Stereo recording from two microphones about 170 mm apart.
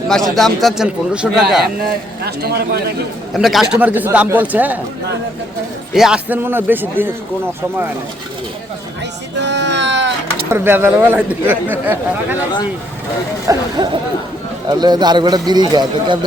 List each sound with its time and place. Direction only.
0.1 s a man's voice: centre (ahead or behind)
1.8 s speech: 70° right (ahead or behind)
3.3 s a man's voice: centre (ahead or behind)
5.9 s a man's voice: 5° right (ahead or behind)
9.4 s a sound: 90° right
10.5 s a man's voice: 15° right (ahead or behind)
13.5 s a man's voice: 25° right (ahead or behind)